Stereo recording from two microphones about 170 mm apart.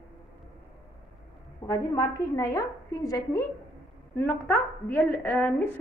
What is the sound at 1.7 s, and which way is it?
A woman's voice, 20° left (ahead or behind).